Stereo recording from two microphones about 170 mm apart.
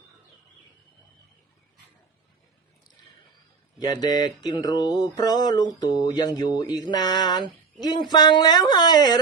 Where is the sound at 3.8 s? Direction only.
25° left (ahead or behind).